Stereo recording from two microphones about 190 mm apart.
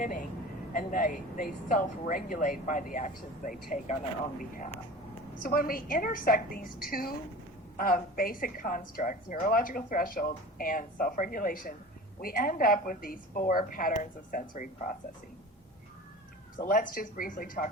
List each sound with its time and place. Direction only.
0.0 s a sound: 45° left (ahead or behind)
0.7 s a woman's voice: 45° left (ahead or behind)
16.6 s a woman's voice: 45° left (ahead or behind)